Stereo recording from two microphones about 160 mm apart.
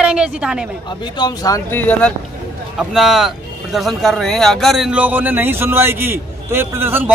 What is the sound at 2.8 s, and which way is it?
Speech, centre (ahead or behind).